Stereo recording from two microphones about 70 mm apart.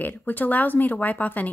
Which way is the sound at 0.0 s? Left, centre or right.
Left.